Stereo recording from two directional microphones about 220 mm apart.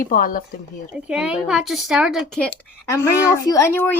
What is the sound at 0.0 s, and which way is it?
Speech, 40° left (ahead or behind).